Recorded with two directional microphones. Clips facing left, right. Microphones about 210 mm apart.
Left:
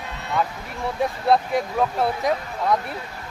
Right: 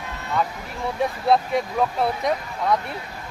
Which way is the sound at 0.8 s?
Centre (ahead or behind).